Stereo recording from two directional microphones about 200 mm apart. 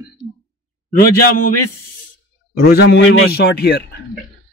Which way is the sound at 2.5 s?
55° left (ahead or behind).